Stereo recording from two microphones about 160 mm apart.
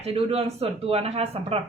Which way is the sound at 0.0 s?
40° right (ahead or behind).